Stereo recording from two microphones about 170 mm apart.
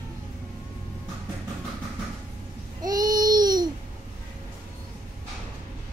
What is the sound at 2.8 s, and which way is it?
Babbling, 25° right (ahead or behind).